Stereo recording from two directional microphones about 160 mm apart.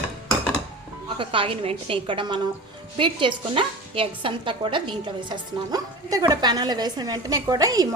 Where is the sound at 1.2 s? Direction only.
35° right (ahead or behind).